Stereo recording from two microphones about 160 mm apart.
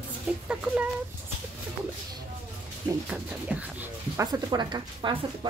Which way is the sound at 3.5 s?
10° right (ahead or behind).